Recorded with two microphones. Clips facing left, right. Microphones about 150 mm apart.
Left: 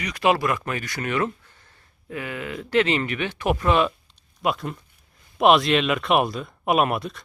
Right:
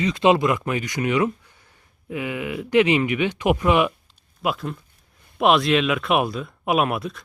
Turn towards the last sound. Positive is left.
turn(degrees=0)  # may be behind; listen again after turning